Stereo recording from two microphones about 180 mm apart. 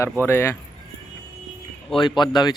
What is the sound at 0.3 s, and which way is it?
Speech, 15° left (ahead or behind).